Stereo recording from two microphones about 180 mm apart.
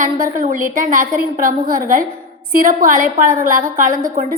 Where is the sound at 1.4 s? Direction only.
55° right (ahead or behind).